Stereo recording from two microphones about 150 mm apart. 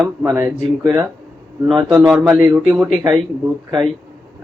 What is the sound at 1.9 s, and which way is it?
Speech, 5° right (ahead or behind).